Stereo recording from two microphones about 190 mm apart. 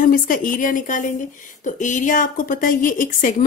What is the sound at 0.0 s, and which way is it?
Speech, 45° left (ahead or behind).